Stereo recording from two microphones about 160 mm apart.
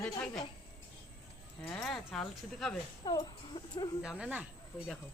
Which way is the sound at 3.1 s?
25° left (ahead or behind).